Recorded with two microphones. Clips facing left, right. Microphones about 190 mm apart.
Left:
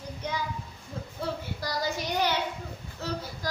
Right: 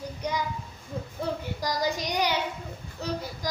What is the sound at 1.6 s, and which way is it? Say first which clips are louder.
Child singing: right 3 dB; 15° right (ahead or behind).